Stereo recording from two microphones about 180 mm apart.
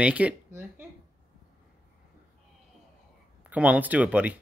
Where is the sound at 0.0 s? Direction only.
10° right (ahead or behind).